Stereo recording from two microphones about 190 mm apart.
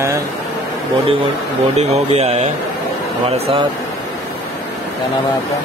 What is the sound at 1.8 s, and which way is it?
Speech, 35° right (ahead or behind).